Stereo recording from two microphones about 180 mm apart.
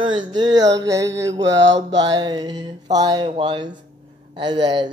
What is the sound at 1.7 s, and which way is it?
Speech, 25° right (ahead or behind).